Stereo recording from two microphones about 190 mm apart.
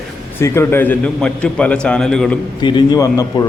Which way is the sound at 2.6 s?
25° left (ahead or behind).